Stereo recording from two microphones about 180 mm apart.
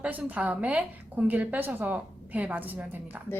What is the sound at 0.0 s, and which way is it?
A woman's voice, 10° right (ahead or behind).